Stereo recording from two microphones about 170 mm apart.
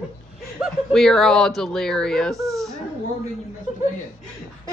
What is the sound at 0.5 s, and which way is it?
Speech, 5° left (ahead or behind).